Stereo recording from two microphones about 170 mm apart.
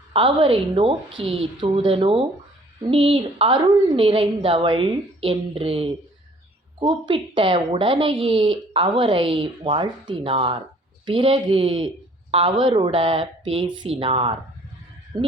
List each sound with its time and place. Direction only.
0.1 s a woman's voice: 35° right (ahead or behind)